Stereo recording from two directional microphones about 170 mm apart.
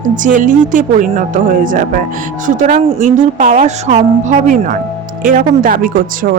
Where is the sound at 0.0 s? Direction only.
50° right (ahead or behind).